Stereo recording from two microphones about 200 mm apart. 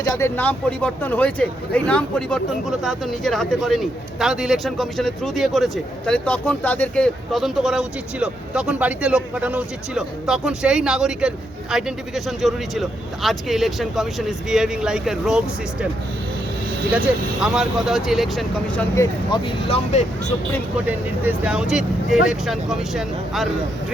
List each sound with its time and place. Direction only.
0.0 s speech: 15° left (ahead or behind); by 15.9 s 5° right (ahead or behind)
17.4 s speech: 5° right (ahead or behind)
18.9 s speech: 25° left (ahead or behind)
20.7 s speech: 5° right (ahead or behind)